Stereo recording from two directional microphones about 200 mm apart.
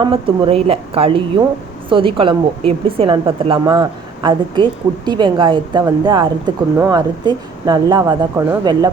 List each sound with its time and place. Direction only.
0.0 s a woman's voice: 25° right (ahead or behind)